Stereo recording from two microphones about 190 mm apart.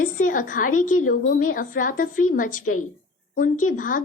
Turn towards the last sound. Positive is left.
turn(degrees=45)  # may be behind; listen again after turning